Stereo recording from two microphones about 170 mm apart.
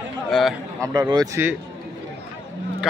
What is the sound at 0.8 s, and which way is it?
Speech, 20° right (ahead or behind).